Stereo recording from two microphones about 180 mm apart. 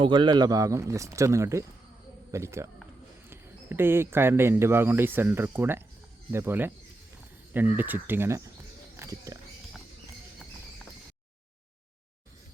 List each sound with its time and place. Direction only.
0.0 s speech: 25° right (ahead or behind)
9.0 s walk: 20° right (ahead or behind)